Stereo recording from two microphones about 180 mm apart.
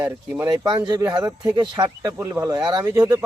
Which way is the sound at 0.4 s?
20° right (ahead or behind).